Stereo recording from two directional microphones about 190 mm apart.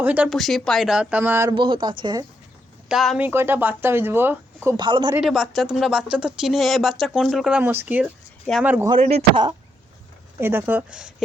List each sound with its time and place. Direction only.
0.0 s speech: 10° right (ahead or behind)
1.5 s speech: 25° right (ahead or behind)
2.9 s speech: centre (ahead or behind)
3.2 s speech: 10° right (ahead or behind)
4.8 s speech: 25° right (ahead or behind)
5.1 s speech: centre (ahead or behind)
8.9 s speech: 30° right (ahead or behind)
10.3 s speech: 15° right (ahead or behind)